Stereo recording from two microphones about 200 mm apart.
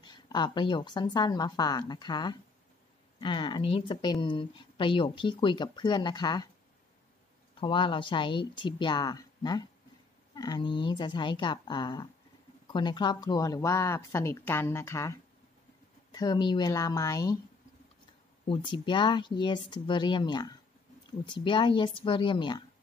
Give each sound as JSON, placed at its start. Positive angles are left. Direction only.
{"t": 0.0, "sound": "speech", "side_deg": 20}
{"t": 7.6, "sound": "speech", "side_deg": 25}
{"t": 18.5, "sound": "speech", "side_deg": 25}